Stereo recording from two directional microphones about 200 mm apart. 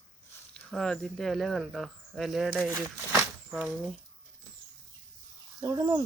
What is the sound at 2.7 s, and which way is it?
Speech, 10° right (ahead or behind).